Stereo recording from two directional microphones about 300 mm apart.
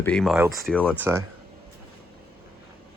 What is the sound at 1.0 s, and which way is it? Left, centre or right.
Speech, centre.